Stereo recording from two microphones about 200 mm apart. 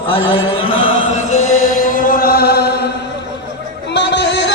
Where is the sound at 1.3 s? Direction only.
40° left (ahead or behind).